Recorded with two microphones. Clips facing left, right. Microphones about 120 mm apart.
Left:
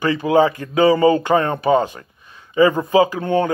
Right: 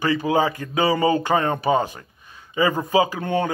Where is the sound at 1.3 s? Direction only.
25° right (ahead or behind).